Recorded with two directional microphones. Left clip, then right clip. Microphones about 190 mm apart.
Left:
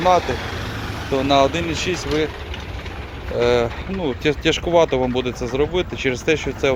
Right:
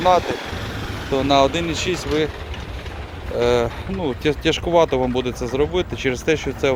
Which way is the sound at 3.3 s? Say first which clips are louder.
Left 1 dB; 5° right (ahead or behind).